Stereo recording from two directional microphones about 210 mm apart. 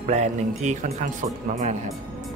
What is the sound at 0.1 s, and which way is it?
Speech, 35° right (ahead or behind).